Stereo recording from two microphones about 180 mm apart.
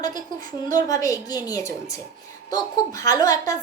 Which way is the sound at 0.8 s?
20° left (ahead or behind).